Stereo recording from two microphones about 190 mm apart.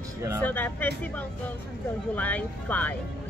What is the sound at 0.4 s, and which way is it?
Speech, 10° left (ahead or behind).